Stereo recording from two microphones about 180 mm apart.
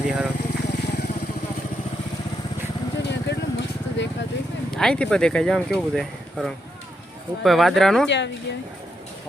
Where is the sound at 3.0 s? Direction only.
75° left (ahead or behind).